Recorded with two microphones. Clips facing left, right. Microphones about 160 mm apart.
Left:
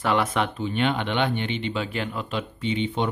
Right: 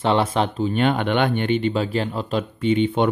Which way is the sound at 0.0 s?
30° right (ahead or behind).